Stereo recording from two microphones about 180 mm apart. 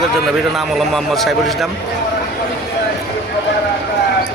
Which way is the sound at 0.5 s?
Centre (ahead or behind).